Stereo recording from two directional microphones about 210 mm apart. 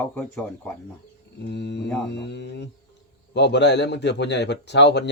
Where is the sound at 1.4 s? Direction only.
55° left (ahead or behind).